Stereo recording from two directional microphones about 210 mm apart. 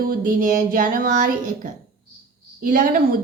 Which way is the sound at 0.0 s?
45° right (ahead or behind).